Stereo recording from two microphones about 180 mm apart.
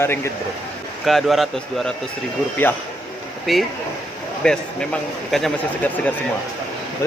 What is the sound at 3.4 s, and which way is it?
A man's voice, centre (ahead or behind).